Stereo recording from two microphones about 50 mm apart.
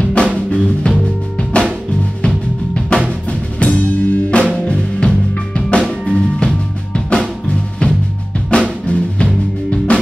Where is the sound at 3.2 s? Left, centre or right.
Left.